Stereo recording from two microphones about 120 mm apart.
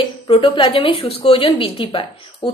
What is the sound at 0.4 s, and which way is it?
A woman's voice, 40° left (ahead or behind).